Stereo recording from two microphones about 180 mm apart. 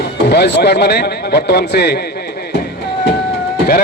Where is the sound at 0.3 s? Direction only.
65° left (ahead or behind).